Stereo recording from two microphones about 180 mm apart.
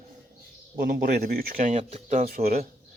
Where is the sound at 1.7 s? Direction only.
40° right (ahead or behind); by 2.6 s 55° right (ahead or behind).